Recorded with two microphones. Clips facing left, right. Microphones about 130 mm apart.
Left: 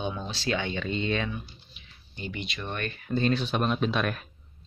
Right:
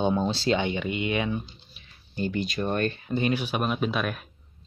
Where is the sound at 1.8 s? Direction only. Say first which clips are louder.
Right 10 dB; 40° right (ahead or behind).